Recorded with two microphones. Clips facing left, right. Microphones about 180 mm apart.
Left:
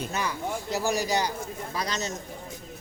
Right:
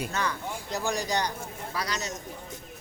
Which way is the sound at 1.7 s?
20° left (ahead or behind).